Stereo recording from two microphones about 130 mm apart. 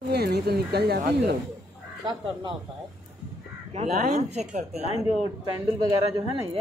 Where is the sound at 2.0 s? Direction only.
35° right (ahead or behind).